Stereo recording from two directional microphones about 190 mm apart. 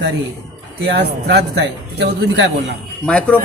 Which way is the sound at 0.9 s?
65° right (ahead or behind).